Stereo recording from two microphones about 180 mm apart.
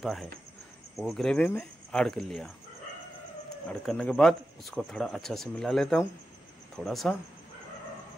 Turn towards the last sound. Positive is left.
turn(degrees=0)  # may be behind; listen again after turning